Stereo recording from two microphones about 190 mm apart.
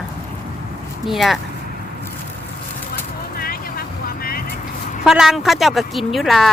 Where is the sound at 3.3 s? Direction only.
50° left (ahead or behind).